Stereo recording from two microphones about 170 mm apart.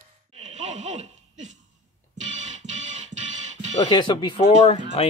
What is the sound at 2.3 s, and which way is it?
Music, 45° right (ahead or behind).